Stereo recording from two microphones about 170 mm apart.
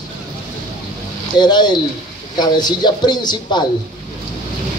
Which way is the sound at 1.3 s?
25° left (ahead or behind).